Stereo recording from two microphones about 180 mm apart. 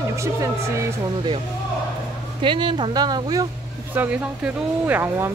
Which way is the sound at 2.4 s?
25° right (ahead or behind).